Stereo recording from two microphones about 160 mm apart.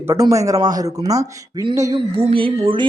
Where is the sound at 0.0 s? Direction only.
20° right (ahead or behind).